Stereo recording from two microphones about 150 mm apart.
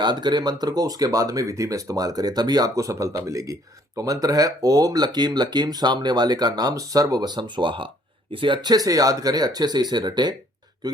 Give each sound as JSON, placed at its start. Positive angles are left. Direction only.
{"t": 0.0, "sound": "speech", "side_deg": -30}